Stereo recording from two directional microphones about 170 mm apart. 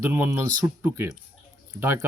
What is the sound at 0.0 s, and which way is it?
Speech, 15° right (ahead or behind).